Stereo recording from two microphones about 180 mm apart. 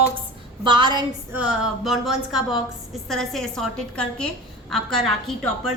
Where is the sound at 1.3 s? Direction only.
5° right (ahead or behind).